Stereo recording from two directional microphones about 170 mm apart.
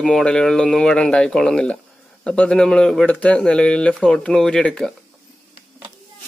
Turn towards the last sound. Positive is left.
turn(degrees=5)  # may be behind; listen again after turning